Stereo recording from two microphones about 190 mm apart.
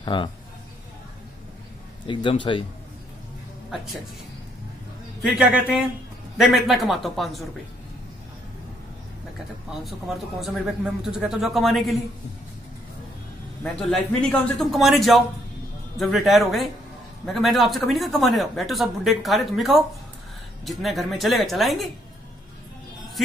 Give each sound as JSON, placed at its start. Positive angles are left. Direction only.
{"t": 0.0, "sound": "a man's voice", "side_deg": 25}
{"t": 2.0, "sound": "speech", "side_deg": 25}
{"t": 3.7, "sound": "speech", "side_deg": 0}
{"t": 5.2, "sound": "speech", "side_deg": -5}
{"t": 9.8, "sound": "speech", "side_deg": 0}
{"t": 13.7, "sound": "speech", "side_deg": 5}